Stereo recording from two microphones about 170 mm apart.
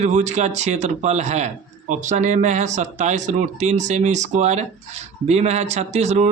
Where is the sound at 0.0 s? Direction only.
45° right (ahead or behind).